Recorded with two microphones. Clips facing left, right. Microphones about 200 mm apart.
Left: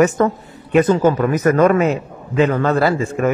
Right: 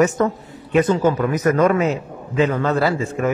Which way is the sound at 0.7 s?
55° left (ahead or behind).